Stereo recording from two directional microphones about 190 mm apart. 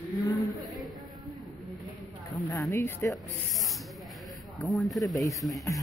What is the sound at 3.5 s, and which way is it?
Snake, centre (ahead or behind).